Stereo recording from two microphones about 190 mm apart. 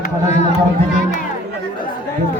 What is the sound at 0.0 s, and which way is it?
Speech, 35° left (ahead or behind).